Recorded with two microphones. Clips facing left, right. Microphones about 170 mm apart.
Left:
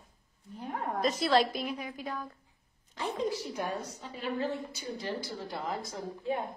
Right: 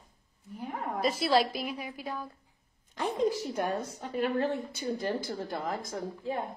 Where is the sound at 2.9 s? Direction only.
50° right (ahead or behind).